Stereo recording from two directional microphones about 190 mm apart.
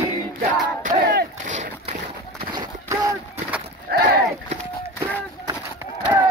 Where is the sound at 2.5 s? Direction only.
20° right (ahead or behind).